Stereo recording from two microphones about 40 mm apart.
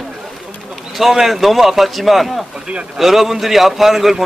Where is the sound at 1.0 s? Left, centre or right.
Centre.